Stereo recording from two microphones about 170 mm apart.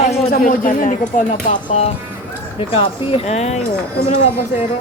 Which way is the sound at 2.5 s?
30° left (ahead or behind).